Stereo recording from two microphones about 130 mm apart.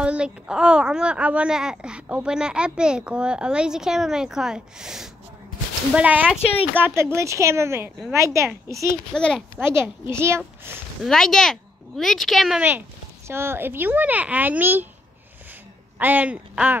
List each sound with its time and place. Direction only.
0.0 s a woman's voice: 10° right (ahead or behind)
9.1 s speech: 5° left (ahead or behind)
9.7 s speech: 20° right (ahead or behind)
11.1 s speech: 5° left (ahead or behind)
13.3 s a woman's voice: 20° right (ahead or behind)
16.0 s a woman's voice: 10° right (ahead or behind)